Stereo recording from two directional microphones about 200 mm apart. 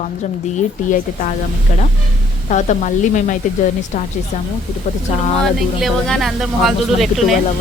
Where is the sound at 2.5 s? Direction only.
40° left (ahead or behind).